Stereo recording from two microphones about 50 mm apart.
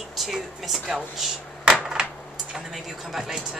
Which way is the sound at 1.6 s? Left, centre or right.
Centre.